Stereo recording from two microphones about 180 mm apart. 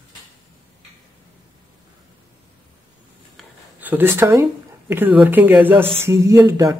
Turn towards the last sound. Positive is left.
turn(degrees=-15)  # may be behind; listen again after turning